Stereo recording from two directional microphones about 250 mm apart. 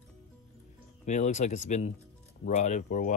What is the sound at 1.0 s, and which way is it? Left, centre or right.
Speech, left.